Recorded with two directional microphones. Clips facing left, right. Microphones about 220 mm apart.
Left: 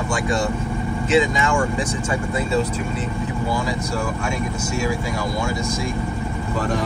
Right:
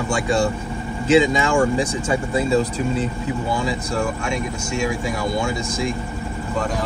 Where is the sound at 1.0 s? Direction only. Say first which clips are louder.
Right 3 dB; 30° right (ahead or behind).